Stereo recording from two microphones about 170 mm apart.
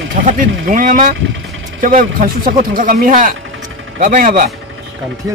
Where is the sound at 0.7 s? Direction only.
50° right (ahead or behind).